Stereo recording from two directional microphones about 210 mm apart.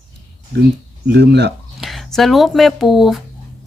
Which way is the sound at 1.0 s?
55° right (ahead or behind).